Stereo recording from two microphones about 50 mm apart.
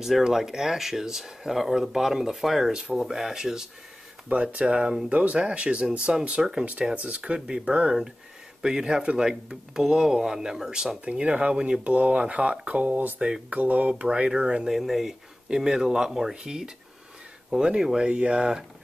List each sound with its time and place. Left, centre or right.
0.0 s speech: centre
4.3 s speech: right
14.7 s speech: centre